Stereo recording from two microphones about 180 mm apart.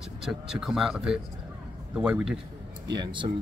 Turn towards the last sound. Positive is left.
turn(degrees=-25)  # may be behind; listen again after turning